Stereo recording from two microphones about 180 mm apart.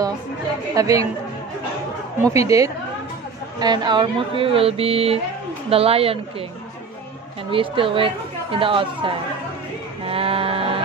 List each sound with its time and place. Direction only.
0.7 s speech: 20° right (ahead or behind)
2.3 s a woman's voice: 20° right (ahead or behind)
7.5 s speech: 30° right (ahead or behind)
10.0 s a sound: 30° right (ahead or behind)